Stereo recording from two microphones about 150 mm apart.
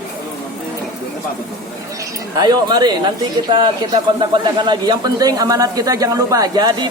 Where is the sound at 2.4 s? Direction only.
30° right (ahead or behind).